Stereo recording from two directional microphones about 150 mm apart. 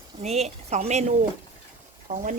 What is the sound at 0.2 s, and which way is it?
Speech, 45° right (ahead or behind).